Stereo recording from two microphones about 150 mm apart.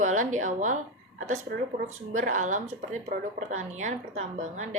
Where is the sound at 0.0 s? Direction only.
55° right (ahead or behind).